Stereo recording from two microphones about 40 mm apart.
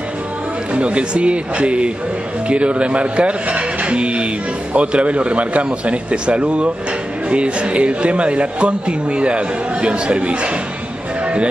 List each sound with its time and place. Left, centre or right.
0.7 s speech: right